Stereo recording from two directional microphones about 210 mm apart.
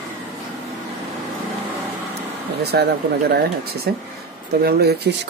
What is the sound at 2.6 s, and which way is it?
Speech, 50° right (ahead or behind).